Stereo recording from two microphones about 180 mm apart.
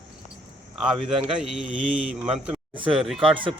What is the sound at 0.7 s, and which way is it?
Speech, 5° right (ahead or behind).